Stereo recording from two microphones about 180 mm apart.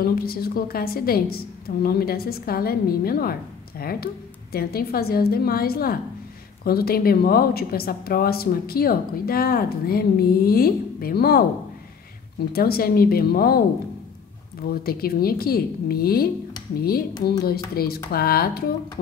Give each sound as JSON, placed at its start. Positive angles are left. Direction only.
{"t": 0.0, "sound": "a woman's voice", "side_deg": 55}
{"t": 12.5, "sound": "a woman's voice", "side_deg": 60}
{"t": 14.7, "sound": "a woman's voice", "side_deg": 55}